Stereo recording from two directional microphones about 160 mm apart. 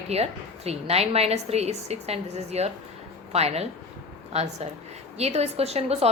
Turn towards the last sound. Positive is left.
turn(degrees=-40)  # may be behind; listen again after turning